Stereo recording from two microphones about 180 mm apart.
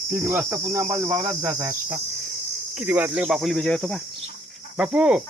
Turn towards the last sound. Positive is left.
turn(degrees=-5)  # may be behind; listen again after turning